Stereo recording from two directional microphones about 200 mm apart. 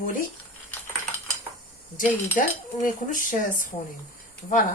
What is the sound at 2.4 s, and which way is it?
Cutlery, 40° left (ahead or behind).